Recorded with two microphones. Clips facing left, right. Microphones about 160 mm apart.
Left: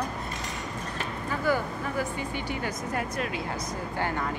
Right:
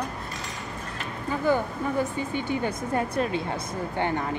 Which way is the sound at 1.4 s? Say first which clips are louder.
Right 3 dB; 20° right (ahead or behind).